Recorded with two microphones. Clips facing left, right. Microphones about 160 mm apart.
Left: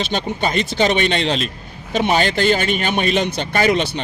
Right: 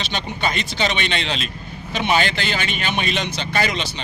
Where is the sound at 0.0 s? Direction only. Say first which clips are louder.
Left 4 dB; 45° left (ahead or behind).